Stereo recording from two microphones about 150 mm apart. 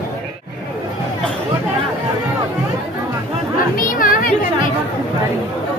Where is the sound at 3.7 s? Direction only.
65° left (ahead or behind).